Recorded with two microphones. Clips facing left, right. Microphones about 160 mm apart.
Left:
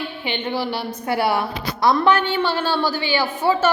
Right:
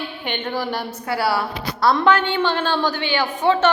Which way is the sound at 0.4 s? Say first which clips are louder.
Left 1 dB; 10° left (ahead or behind).